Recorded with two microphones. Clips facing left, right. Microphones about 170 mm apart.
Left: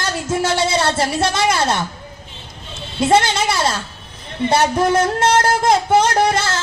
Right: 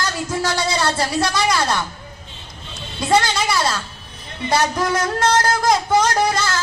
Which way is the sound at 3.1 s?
25° left (ahead or behind).